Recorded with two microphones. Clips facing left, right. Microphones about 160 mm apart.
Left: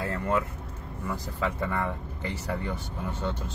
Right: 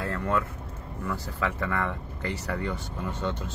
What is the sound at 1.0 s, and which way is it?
Speech, 10° left (ahead or behind).